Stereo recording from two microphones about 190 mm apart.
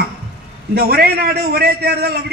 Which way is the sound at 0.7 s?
55° right (ahead or behind).